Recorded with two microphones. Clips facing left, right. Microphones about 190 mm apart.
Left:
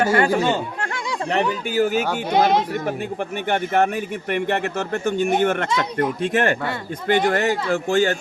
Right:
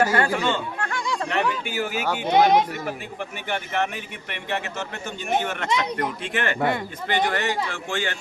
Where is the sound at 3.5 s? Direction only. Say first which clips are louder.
Left 7 dB; 50° left (ahead or behind).